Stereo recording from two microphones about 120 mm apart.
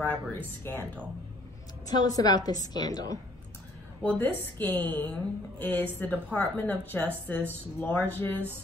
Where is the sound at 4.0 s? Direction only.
15° left (ahead or behind).